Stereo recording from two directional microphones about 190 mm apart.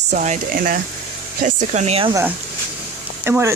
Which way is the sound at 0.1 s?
40° right (ahead or behind).